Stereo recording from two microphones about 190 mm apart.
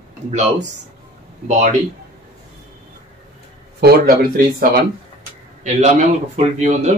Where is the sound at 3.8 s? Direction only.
50° right (ahead or behind).